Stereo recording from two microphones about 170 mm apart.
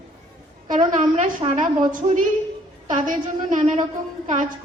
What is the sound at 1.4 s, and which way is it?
Speech, 30° right (ahead or behind).